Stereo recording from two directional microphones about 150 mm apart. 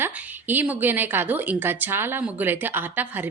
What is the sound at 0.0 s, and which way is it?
A woman's voice, 10° right (ahead or behind).